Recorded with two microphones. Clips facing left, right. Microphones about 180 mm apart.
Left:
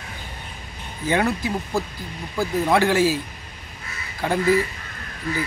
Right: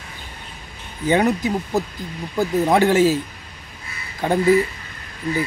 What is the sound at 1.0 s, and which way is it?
Speech, 20° right (ahead or behind).